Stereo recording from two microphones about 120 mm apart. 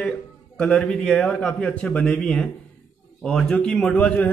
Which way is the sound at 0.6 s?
10° left (ahead or behind).